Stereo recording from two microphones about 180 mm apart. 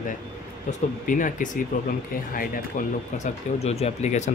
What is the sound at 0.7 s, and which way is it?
Speech, 45° left (ahead or behind).